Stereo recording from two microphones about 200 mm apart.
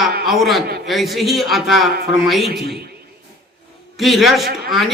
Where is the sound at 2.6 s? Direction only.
50° right (ahead or behind).